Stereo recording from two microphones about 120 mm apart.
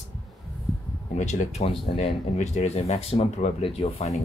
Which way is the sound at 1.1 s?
70° left (ahead or behind).